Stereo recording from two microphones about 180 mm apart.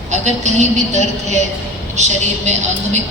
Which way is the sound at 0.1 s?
40° right (ahead or behind).